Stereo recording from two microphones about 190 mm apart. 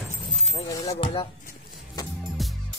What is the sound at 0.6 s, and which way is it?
Speech, 20° left (ahead or behind).